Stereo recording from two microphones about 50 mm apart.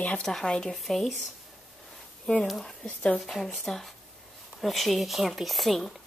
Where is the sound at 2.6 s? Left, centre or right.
Centre.